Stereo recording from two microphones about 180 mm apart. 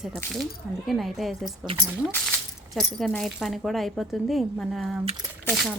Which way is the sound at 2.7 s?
Centre (ahead or behind).